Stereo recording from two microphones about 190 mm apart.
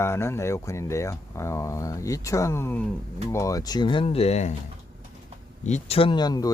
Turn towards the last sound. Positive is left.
turn(degrees=20)  # may be behind; listen again after turning